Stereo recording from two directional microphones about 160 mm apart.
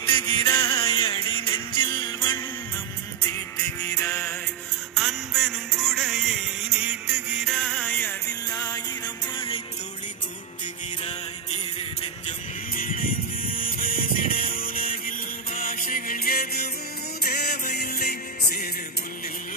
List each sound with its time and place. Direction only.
0.0 s music: 30° left (ahead or behind)
0.5 s music: 15° left (ahead or behind)
1.0 s music: 35° left (ahead or behind)
3.3 s music: 10° left (ahead or behind)
4.9 s music: centre (ahead or behind); by 9.6 s 30° left (ahead or behind)
12.7 s music: 60° left (ahead or behind); by 18.7 s 75° left (ahead or behind)